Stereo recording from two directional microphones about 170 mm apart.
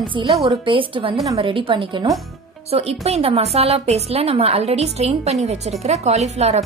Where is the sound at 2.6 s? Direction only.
35° right (ahead or behind).